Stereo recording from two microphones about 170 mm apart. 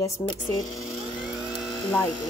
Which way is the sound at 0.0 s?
20° left (ahead or behind).